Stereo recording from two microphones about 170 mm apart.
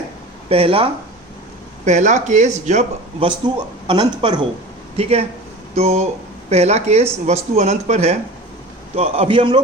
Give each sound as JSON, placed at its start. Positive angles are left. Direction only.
{"t": 0.4, "sound": "speech", "side_deg": -35}
{"t": 1.8, "sound": "speech", "side_deg": -45}
{"t": 3.2, "sound": "speech", "side_deg": -25}
{"t": 4.9, "sound": "speech", "side_deg": -35}